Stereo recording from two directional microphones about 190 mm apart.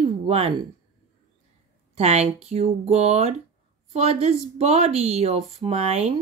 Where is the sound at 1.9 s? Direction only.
35° right (ahead or behind).